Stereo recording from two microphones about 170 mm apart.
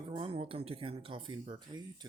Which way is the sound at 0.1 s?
30° right (ahead or behind).